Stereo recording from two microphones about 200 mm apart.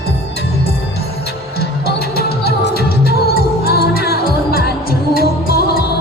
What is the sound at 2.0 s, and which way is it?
Music, 50° left (ahead or behind).